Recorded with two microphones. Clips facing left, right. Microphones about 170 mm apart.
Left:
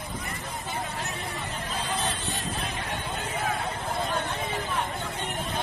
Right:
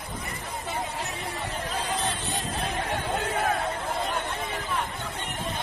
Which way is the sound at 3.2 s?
65° right (ahead or behind).